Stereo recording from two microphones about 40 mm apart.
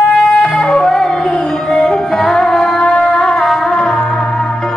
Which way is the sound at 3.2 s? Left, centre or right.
Centre.